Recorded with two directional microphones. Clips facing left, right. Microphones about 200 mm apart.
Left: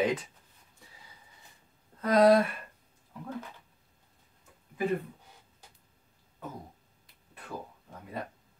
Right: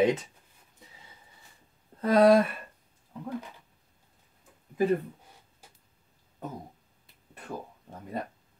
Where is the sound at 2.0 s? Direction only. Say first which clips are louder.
Right 2 dB; 30° right (ahead or behind).